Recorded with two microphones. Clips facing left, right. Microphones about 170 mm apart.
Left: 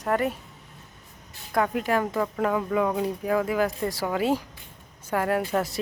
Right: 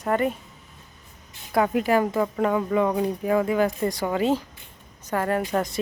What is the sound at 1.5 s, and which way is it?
A woman's voice, 5° right (ahead or behind).